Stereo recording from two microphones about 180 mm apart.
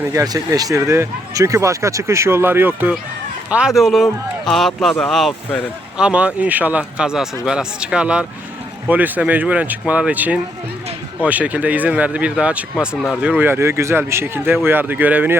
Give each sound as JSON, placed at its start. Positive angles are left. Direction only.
{"t": 0.0, "sound": "speech", "side_deg": -15}